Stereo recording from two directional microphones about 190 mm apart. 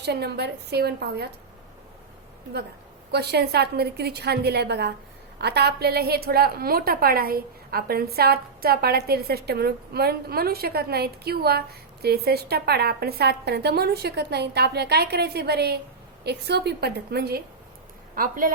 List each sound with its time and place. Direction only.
0.0 s a woman's voice: 60° right (ahead or behind)
3.1 s a woman's voice: 60° right (ahead or behind)